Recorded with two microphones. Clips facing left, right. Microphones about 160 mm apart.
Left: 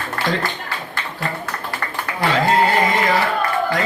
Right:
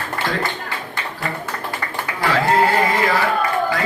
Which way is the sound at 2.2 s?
20° left (ahead or behind).